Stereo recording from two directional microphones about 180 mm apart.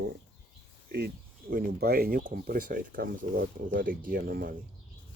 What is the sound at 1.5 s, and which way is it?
Speech, 60° right (ahead or behind).